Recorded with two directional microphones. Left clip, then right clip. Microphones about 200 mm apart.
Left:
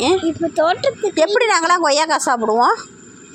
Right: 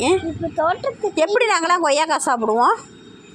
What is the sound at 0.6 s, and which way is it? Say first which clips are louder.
Speech: left 4 dB; 55° left (ahead or behind).